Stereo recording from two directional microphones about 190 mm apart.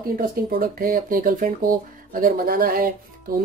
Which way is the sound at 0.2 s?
50° right (ahead or behind).